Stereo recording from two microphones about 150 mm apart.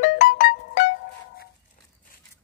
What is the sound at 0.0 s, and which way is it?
Music, 60° left (ahead or behind).